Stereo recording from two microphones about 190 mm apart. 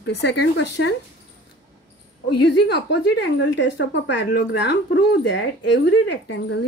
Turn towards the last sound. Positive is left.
turn(degrees=65)  # may be behind; listen again after turning